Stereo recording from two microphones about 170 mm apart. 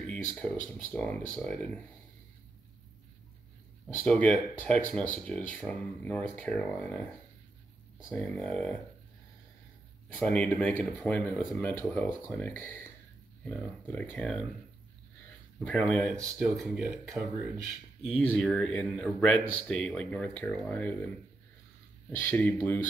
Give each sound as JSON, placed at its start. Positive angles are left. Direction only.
{"t": 0.3, "sound": "speech", "side_deg": 5}
{"t": 3.8, "sound": "speech", "side_deg": 5}
{"t": 8.1, "sound": "speech", "side_deg": 5}
{"t": 10.1, "sound": "speech", "side_deg": 5}
{"t": 15.6, "sound": "speech", "side_deg": 5}
{"t": 16.2, "sound": "speech", "side_deg": -20}
{"t": 16.5, "sound": "speech", "side_deg": 0}
{"t": 17.1, "sound": "speech", "side_deg": -20}
{"t": 18.1, "sound": "speech", "side_deg": 5}
{"t": 22.1, "sound": "speech", "side_deg": 10}